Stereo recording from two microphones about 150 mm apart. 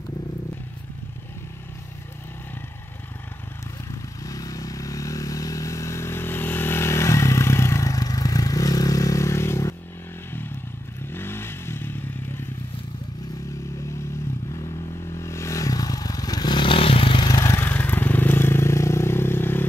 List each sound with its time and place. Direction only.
4.2 s vehicle: 25° left (ahead or behind)
11.1 s motorcycle: 15° left (ahead or behind)
15.1 s scrape: 20° left (ahead or behind)